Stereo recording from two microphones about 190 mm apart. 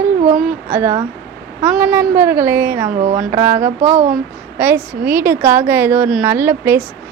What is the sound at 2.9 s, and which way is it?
Speech, 40° right (ahead or behind).